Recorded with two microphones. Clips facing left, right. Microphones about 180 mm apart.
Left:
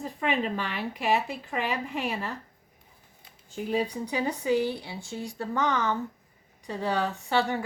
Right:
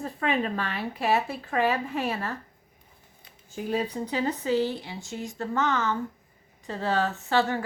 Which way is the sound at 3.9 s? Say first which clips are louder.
Right 1 dB; 10° left (ahead or behind).